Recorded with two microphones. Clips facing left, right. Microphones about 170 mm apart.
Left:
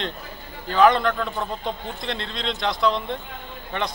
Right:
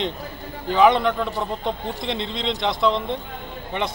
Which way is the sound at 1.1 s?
15° right (ahead or behind).